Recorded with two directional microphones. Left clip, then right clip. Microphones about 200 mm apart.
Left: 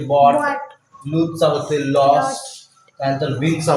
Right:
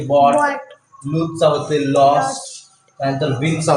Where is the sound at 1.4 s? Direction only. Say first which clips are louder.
Right 3 dB; 15° right (ahead or behind).